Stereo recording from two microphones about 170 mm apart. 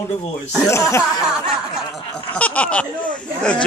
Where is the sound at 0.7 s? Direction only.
15° left (ahead or behind).